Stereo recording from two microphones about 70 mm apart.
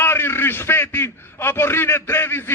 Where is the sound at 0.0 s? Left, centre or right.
Left.